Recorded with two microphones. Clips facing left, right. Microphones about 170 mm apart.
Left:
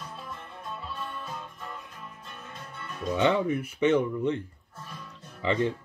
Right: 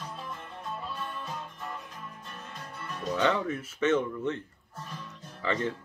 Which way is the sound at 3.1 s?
15° left (ahead or behind).